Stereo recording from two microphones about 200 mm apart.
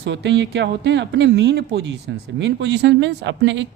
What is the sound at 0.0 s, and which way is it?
Speech, 60° right (ahead or behind).